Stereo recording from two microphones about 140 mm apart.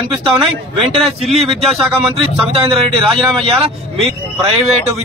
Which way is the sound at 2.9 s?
Centre (ahead or behind).